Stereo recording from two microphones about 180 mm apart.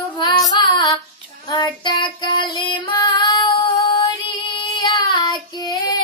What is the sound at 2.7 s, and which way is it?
Female singing, 30° left (ahead or behind).